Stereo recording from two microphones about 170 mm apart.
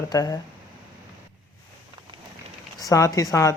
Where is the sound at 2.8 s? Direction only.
20° left (ahead or behind).